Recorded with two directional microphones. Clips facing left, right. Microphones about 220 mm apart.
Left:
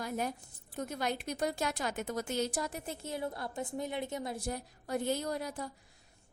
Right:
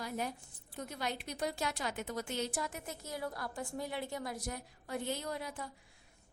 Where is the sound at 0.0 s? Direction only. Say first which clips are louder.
Left 3 dB; 45° left (ahead or behind).